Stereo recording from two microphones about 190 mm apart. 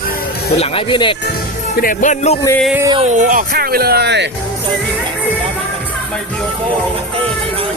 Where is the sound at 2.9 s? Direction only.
35° right (ahead or behind); by 4.3 s 60° right (ahead or behind).